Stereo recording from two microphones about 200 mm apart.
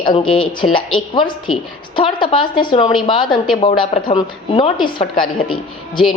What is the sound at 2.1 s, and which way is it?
Speech, 25° left (ahead or behind).